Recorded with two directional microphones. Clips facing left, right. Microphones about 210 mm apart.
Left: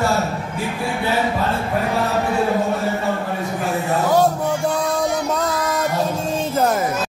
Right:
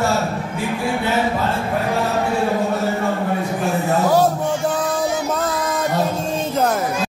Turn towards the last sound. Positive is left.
turn(degrees=0)  # may be behind; listen again after turning